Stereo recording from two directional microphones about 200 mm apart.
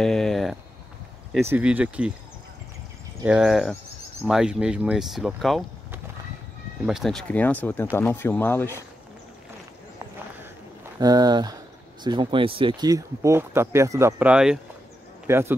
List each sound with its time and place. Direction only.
0.0 s a sound: centre (ahead or behind)
1.4 s speech: 10° right (ahead or behind)
3.3 s speech: 5° right (ahead or behind)
6.9 s speech: centre (ahead or behind)
11.0 s speech: 20° right (ahead or behind)